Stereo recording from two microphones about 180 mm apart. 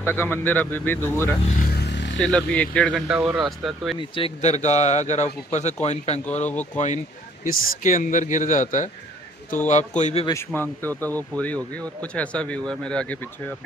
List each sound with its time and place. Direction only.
0.0 s speech: 10° left (ahead or behind)
1.7 s vehicle: 70° left (ahead or behind)
2.1 s speech: 5° left (ahead or behind)
2.9 s speech: 5° right (ahead or behind)
4.1 s a man's voice: 35° left (ahead or behind)
6.5 s speech: 10° left (ahead or behind)
7.4 s a man's voice: 50° left (ahead or behind)
10.2 s speech: 15° left (ahead or behind)